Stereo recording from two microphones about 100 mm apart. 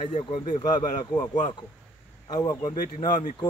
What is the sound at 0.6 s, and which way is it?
Speech, 40° left (ahead or behind).